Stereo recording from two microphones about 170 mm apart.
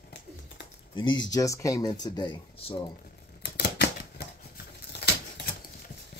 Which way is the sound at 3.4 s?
75° left (ahead or behind).